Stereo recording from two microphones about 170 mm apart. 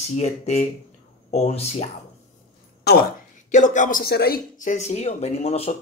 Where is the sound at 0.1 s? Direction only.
40° left (ahead or behind).